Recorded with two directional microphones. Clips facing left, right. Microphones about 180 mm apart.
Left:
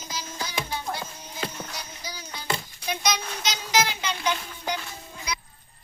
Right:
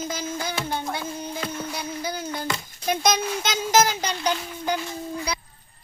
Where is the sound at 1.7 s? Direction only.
55° right (ahead or behind).